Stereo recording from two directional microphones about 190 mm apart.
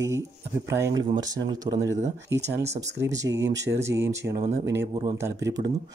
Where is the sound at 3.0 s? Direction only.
15° right (ahead or behind).